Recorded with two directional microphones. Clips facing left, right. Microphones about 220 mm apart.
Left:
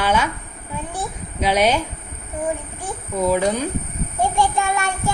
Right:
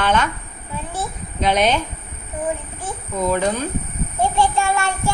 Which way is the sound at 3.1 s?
10° left (ahead or behind).